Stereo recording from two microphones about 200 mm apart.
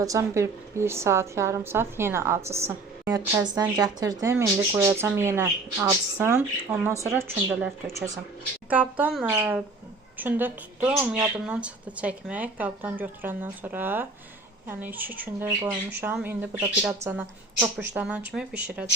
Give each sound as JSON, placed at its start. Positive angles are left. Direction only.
{"t": 0.0, "sound": "a woman's voice", "side_deg": -15}